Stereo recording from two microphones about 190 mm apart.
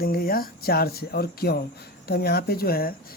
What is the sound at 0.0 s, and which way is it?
Speech, 50° left (ahead or behind).